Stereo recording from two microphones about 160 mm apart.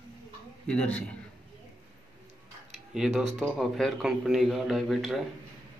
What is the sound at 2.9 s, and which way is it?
A man's voice, 5° right (ahead or behind).